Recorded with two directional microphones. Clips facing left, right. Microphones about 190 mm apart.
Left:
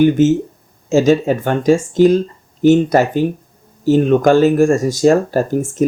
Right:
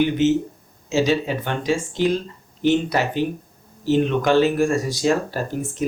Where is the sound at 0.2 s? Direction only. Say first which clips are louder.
Left 6 dB; 45° left (ahead or behind).